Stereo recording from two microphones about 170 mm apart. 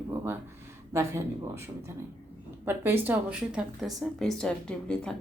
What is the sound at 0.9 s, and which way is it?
Speech, 15° right (ahead or behind).